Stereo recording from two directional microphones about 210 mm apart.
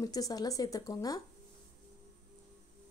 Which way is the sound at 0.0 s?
20° left (ahead or behind).